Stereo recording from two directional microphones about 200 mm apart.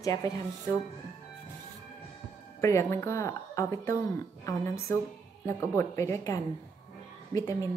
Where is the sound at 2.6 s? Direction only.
15° left (ahead or behind).